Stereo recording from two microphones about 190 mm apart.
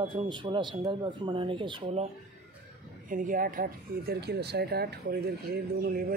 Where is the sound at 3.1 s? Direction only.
45° right (ahead or behind).